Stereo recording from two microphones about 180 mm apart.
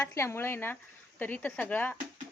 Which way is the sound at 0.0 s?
15° left (ahead or behind).